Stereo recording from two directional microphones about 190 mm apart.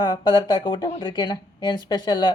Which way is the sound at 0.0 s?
25° left (ahead or behind).